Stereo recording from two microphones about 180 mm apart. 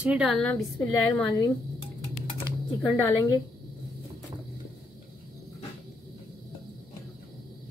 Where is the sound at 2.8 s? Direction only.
20° left (ahead or behind).